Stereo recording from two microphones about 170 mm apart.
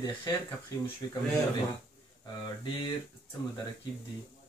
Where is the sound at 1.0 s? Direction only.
25° left (ahead or behind).